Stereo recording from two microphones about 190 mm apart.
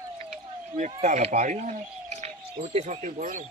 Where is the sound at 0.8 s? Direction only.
40° right (ahead or behind).